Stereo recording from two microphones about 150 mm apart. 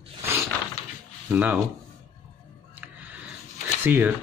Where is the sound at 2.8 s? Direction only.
10° right (ahead or behind).